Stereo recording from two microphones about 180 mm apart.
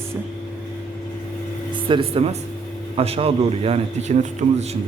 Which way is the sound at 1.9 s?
30° right (ahead or behind).